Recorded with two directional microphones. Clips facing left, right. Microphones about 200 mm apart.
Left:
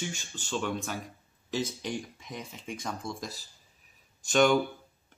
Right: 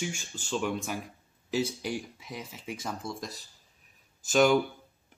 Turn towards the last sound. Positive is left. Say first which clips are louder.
# right 1 dB
turn(degrees=-5)  # may be behind; listen again after turning